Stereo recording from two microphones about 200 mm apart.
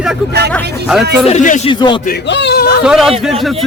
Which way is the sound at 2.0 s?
55° left (ahead or behind).